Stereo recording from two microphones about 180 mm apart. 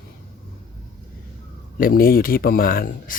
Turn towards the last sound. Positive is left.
turn(degrees=50)  # may be behind; listen again after turning